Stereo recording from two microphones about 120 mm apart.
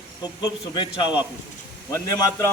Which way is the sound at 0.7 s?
40° left (ahead or behind).